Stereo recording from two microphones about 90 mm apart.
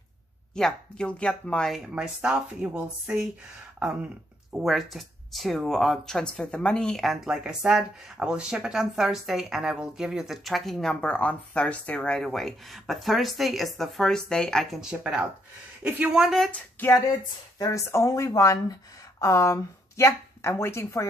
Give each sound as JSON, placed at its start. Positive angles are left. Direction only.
{"t": 0.6, "sound": "speech", "side_deg": 10}
{"t": 2.0, "sound": "speech", "side_deg": -10}
{"t": 7.2, "sound": "speech", "side_deg": -10}
{"t": 14.8, "sound": "speech", "side_deg": -10}
{"t": 17.7, "sound": "speech", "side_deg": 35}